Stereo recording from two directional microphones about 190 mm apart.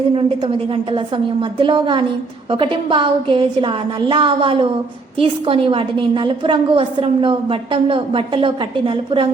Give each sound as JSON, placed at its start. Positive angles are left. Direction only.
{"t": 0.2, "sound": "a woman's voice", "side_deg": -30}